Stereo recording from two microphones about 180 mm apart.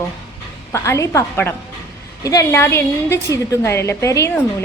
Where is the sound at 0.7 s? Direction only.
15° left (ahead or behind).